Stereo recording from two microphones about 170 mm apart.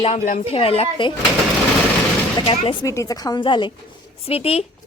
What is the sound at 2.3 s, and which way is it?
Speech, 30° left (ahead or behind).